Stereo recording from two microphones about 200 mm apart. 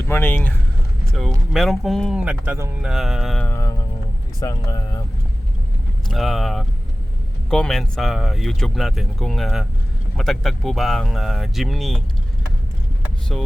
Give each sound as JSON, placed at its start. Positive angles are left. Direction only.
{"t": 0.0, "sound": "speech", "side_deg": 10}
{"t": 6.1, "sound": "speech", "side_deg": 0}
{"t": 13.3, "sound": "speech", "side_deg": 0}